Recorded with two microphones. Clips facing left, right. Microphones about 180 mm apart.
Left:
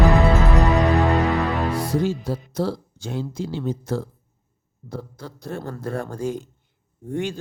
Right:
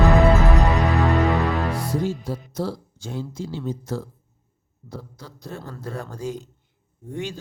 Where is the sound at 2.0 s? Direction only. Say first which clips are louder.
Left 3 dB; 75° left (ahead or behind).